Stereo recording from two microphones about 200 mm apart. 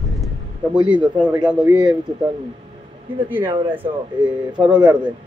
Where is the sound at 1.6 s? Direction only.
20° right (ahead or behind).